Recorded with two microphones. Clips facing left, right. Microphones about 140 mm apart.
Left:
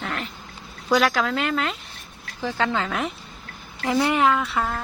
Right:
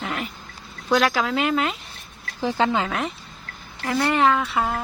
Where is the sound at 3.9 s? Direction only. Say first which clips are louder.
Even; 15° left (ahead or behind).